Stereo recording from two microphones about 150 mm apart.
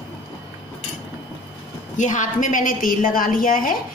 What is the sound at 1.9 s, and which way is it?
A woman's voice, 55° left (ahead or behind).